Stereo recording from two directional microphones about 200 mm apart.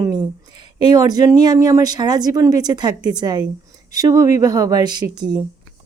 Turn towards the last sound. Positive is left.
turn(degrees=-20)  # may be behind; listen again after turning